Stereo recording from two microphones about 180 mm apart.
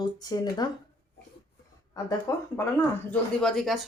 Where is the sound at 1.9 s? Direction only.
20° left (ahead or behind).